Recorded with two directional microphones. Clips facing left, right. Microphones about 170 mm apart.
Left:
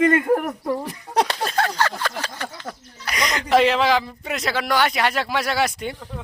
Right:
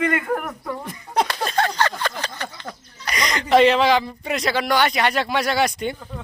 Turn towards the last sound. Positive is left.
turn(degrees=5)  # may be behind; listen again after turning